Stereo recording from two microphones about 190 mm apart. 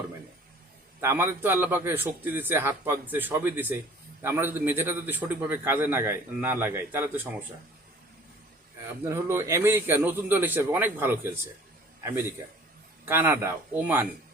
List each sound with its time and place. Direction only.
1.0 s a man's voice: 15° right (ahead or behind)
9.0 s a man's voice: 15° right (ahead or behind)
13.1 s a man's voice: 10° right (ahead or behind)